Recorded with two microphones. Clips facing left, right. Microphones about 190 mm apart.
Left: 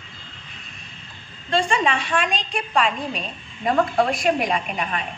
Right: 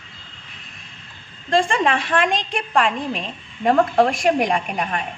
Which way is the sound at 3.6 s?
45° right (ahead or behind).